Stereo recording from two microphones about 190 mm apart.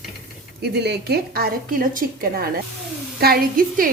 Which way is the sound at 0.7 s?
60° right (ahead or behind).